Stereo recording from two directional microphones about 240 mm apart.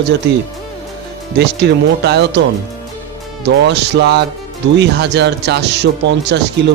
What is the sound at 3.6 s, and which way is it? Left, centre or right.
Speech, right.